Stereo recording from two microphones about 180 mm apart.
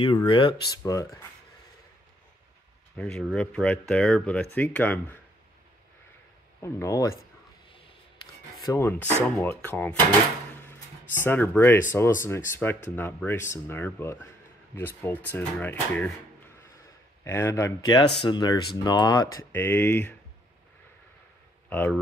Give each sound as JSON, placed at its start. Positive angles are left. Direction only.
{"t": 0.0, "sound": "speech", "side_deg": 25}
{"t": 3.0, "sound": "speech", "side_deg": 5}
{"t": 6.6, "sound": "speech", "side_deg": 20}
{"t": 8.6, "sound": "speech", "side_deg": 15}
{"t": 11.2, "sound": "speech", "side_deg": 10}
{"t": 17.2, "sound": "speech", "side_deg": 15}
{"t": 19.5, "sound": "speech", "side_deg": 10}
{"t": 21.6, "sound": "speech", "side_deg": 10}